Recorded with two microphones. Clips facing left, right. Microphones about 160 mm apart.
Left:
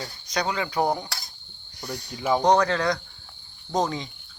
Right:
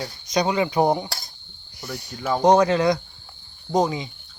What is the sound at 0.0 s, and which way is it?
Speech, 15° right (ahead or behind).